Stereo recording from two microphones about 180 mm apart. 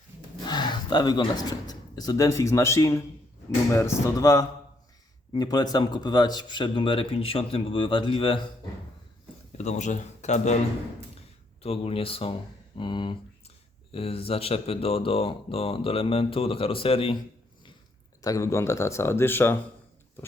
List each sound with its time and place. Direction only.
0.4 s speech: 25° left (ahead or behind)
9.6 s speech: 40° left (ahead or behind)
11.6 s speech: 35° left (ahead or behind)
18.2 s speech: 20° left (ahead or behind)